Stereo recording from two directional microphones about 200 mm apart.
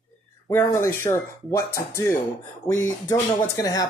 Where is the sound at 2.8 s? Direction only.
15° left (ahead or behind).